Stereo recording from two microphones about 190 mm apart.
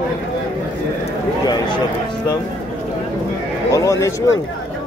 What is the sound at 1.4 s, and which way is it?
Speech, 20° left (ahead or behind).